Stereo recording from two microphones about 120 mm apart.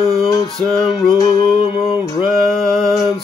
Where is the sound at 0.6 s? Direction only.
5° left (ahead or behind).